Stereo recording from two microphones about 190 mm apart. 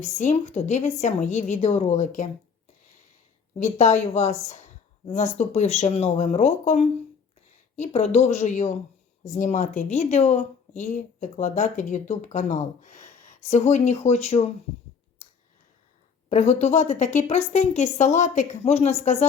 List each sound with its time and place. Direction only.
0.0 s speech: 35° left (ahead or behind)
3.5 s speech: 35° left (ahead or behind)
16.3 s speech: 35° left (ahead or behind)